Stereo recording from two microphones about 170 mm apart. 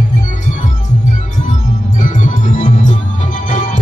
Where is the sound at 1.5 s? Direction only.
45° left (ahead or behind).